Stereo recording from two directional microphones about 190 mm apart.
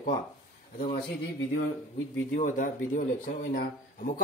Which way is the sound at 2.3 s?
45° left (ahead or behind).